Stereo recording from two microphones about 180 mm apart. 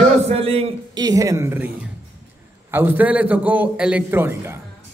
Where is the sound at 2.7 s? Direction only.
10° right (ahead or behind).